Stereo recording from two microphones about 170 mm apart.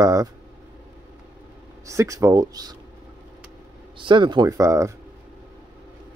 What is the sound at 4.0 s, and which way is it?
Speech, 30° right (ahead or behind).